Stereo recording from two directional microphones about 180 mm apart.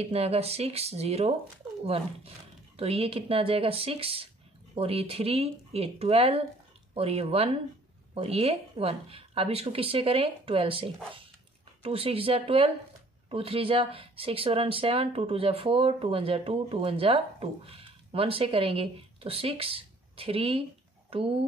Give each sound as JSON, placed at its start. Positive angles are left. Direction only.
{"t": 0.0, "sound": "speech", "side_deg": -35}